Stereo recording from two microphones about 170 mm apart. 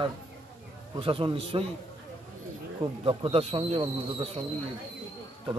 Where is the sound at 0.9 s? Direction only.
30° right (ahead or behind).